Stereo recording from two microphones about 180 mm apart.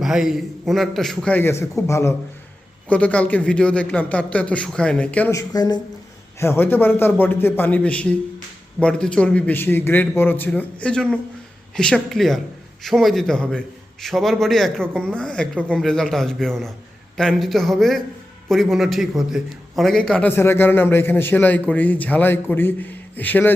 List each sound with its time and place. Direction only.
0.0 s a man's voice: centre (ahead or behind)
5.3 s a man's voice: 20° left (ahead or behind)